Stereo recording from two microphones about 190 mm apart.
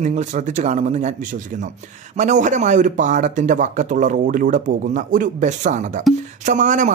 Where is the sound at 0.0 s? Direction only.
40° right (ahead or behind).